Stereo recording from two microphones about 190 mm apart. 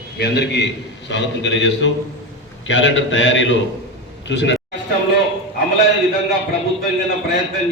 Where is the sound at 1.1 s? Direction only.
70° left (ahead or behind).